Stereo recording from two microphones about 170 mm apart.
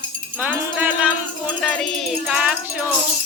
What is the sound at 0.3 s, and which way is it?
Music, 10° right (ahead or behind).